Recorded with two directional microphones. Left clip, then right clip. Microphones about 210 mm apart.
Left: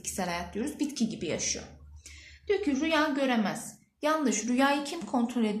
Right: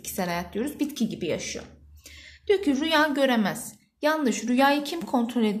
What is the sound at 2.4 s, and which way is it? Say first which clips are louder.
A woman's voice: right 5 dB; 50° right (ahead or behind).